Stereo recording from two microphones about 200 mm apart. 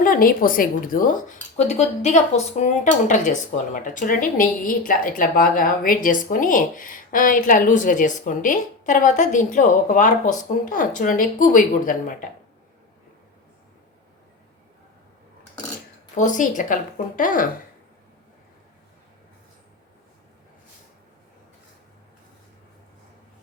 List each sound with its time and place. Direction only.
0.0 s a woman's voice: 45° left (ahead or behind)
16.1 s a woman's voice: 40° left (ahead or behind)